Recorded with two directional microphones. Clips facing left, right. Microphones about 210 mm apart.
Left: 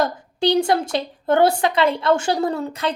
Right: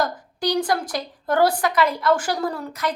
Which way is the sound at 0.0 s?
25° left (ahead or behind).